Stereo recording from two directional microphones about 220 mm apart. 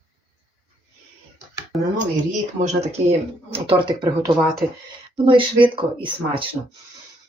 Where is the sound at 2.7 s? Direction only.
30° right (ahead or behind).